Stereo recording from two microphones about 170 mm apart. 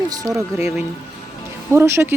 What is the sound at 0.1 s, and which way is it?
Speech, 20° right (ahead or behind).